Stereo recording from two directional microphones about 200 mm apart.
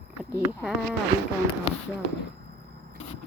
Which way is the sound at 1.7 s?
35° left (ahead or behind).